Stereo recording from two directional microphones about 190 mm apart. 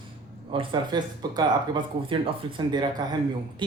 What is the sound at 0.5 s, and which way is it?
Speech, 25° right (ahead or behind).